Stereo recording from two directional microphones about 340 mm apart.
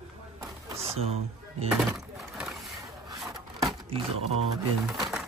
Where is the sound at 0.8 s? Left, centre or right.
Centre.